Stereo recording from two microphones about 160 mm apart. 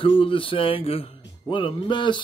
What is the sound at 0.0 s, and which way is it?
Speech, 35° left (ahead or behind).